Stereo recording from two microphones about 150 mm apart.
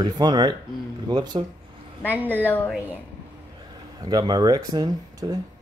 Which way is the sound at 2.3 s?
10° left (ahead or behind).